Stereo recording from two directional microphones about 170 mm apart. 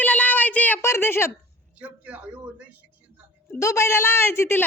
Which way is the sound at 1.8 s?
10° right (ahead or behind).